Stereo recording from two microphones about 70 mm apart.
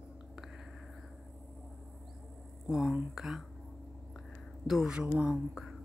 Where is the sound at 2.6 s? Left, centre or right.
Centre.